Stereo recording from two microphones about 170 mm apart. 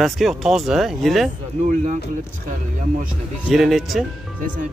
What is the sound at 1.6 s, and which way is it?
Speech, 50° right (ahead or behind).